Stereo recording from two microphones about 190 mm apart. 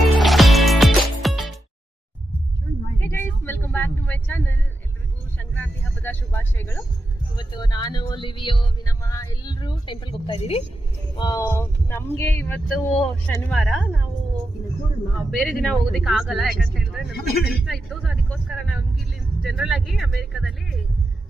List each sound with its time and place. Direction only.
0.2 s music: centre (ahead or behind)
3.0 s a sound: 10° left (ahead or behind)
7.3 s speech: 25° left (ahead or behind)
11.2 s speech: 20° left (ahead or behind); by 14.0 s centre (ahead or behind)
15.1 s speech: centre (ahead or behind)
17.1 s a man's voice: 55° left (ahead or behind)
17.7 s speech: 5° right (ahead or behind)